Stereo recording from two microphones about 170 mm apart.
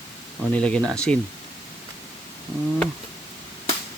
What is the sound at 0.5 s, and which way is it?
Speech, 5° left (ahead or behind).